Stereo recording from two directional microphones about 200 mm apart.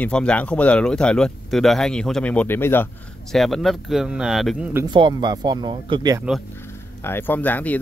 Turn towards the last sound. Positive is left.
turn(degrees=10)  # may be behind; listen again after turning